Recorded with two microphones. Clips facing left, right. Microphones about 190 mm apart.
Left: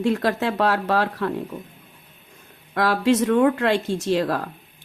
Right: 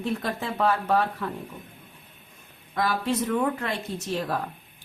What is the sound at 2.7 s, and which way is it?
Speech, 80° left.